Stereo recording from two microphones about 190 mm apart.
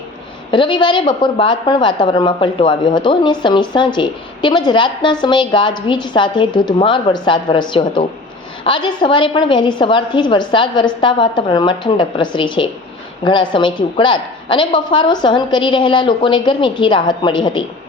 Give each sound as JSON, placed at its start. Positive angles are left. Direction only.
{"t": 0.5, "sound": "a woman's voice", "side_deg": 25}